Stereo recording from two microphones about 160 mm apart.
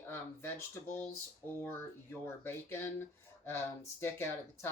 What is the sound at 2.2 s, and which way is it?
Speech, 15° left (ahead or behind).